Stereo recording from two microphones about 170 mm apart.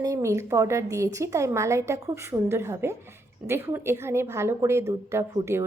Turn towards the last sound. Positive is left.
turn(degrees=-15)  # may be behind; listen again after turning